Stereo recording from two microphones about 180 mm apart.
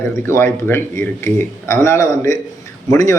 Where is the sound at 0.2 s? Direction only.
15° left (ahead or behind).